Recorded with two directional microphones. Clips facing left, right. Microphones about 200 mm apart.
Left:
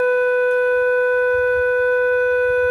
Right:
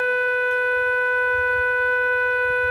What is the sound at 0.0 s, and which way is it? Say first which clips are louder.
Shofar: left 8 dB; 45° left (ahead or behind).